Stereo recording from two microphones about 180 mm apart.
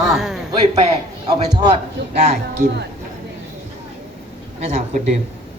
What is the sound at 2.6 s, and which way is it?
Speech, 55° right (ahead or behind).